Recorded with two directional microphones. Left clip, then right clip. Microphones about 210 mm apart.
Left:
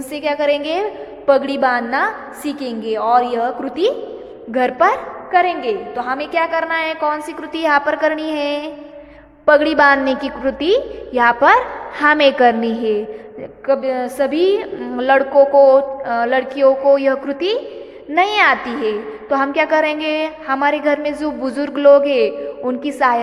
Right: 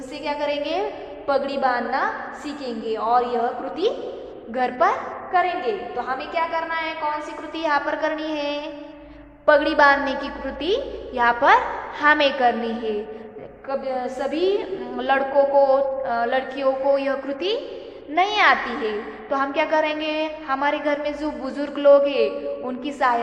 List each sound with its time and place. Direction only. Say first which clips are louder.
0.1 s a woman's voice: left 8 dB; 50° left (ahead or behind)
13.7 s a woman's voice: left 8 dB; 50° left (ahead or behind)